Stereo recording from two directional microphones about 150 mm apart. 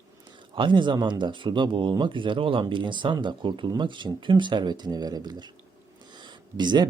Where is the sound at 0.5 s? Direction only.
30° right (ahead or behind).